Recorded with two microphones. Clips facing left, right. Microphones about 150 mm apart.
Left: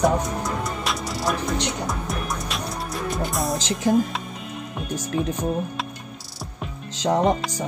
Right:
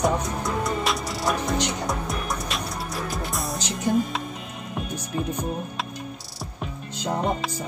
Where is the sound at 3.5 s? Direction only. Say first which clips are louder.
Left 2 dB; 90° left.